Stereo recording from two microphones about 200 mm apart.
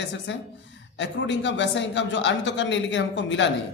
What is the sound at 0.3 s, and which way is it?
A woman's voice, 65° left (ahead or behind).